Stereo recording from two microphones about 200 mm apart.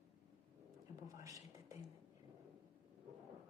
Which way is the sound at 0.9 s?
15° right (ahead or behind).